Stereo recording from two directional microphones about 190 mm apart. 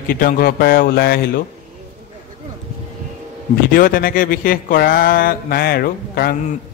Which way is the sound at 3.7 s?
50° left (ahead or behind).